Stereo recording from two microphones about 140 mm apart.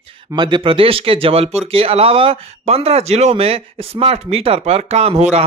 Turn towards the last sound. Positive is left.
turn(degrees=-50)  # may be behind; listen again after turning